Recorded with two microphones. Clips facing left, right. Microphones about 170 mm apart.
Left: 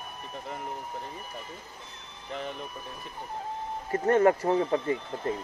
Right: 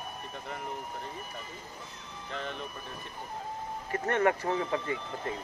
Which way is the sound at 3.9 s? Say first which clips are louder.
Left 6 dB; 30° left (ahead or behind).